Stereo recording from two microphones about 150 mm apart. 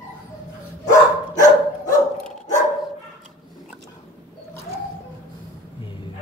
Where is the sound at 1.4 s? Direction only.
55° left (ahead or behind).